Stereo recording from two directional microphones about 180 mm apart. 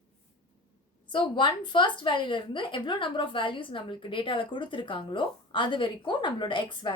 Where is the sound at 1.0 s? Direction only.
25° left (ahead or behind).